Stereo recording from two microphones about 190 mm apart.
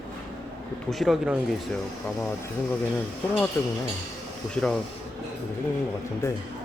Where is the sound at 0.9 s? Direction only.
Centre (ahead or behind).